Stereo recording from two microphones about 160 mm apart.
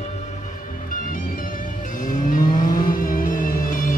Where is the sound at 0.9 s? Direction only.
60° left (ahead or behind).